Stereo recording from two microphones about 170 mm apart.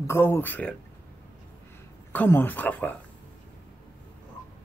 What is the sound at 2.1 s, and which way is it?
Speech, 10° left (ahead or behind).